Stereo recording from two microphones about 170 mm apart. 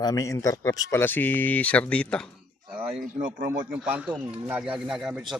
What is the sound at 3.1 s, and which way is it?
Speech, 50° right (ahead or behind).